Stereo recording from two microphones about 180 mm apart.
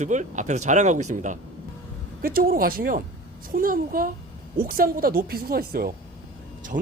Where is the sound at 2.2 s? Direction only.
55° right (ahead or behind).